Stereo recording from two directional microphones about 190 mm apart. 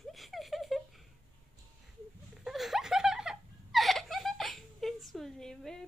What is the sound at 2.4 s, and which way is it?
Laughter, centre (ahead or behind).